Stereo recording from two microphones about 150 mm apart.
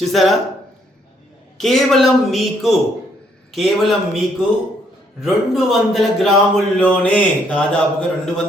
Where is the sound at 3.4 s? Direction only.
Centre (ahead or behind).